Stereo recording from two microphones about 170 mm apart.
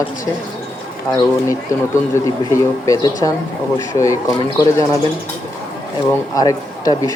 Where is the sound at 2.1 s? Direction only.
20° left (ahead or behind).